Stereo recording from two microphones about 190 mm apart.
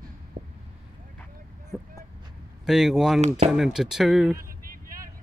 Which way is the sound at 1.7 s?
Centre (ahead or behind).